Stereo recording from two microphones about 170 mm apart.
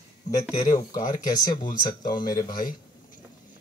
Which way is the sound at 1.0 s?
50° left (ahead or behind).